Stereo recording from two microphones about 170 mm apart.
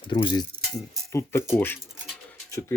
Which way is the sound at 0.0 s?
30° left (ahead or behind).